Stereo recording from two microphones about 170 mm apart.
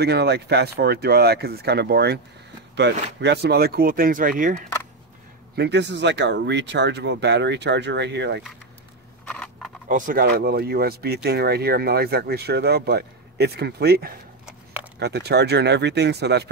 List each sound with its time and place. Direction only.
0.0 s speech: 80° right
2.7 s speech: 90° right; by 4.6 s 50° right (ahead or behind)
5.6 s speech: 90° right
9.3 s a sound: 5° left (ahead or behind)
9.8 s speech: 50° right (ahead or behind); by 16.4 s 80° right